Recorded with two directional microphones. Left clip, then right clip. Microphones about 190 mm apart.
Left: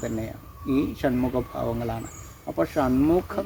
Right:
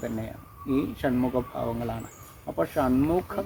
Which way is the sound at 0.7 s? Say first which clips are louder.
Left 2 dB; 20° left (ahead or behind).